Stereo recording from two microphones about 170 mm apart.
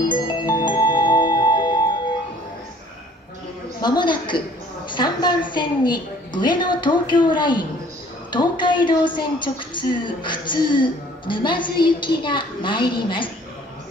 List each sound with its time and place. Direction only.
0.1 s music: 25° left (ahead or behind)
3.8 s a sound: 25° left (ahead or behind)
4.8 s a woman's voice: 25° left (ahead or behind)
8.3 s music: 25° left (ahead or behind)